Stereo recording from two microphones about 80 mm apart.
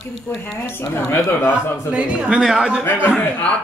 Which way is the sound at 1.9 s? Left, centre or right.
Centre.